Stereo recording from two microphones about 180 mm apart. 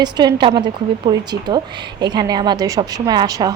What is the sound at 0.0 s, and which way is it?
A woman's voice, 25° right (ahead or behind).